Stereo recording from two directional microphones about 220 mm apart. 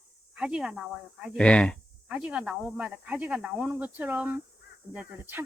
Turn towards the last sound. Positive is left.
turn(degrees=-10)  # may be behind; listen again after turning